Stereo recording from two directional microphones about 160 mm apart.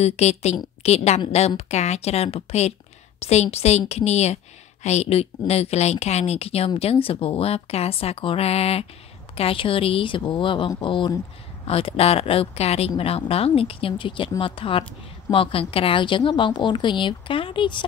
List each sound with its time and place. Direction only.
0.0 s a woman's voice: 40° left (ahead or behind)